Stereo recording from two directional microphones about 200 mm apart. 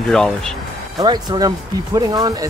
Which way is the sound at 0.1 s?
Centre (ahead or behind).